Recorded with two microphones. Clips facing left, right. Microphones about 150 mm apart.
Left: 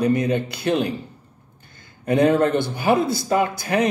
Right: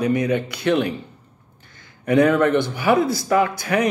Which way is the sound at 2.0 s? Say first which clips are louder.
Right 1 dB; 30° left (ahead or behind).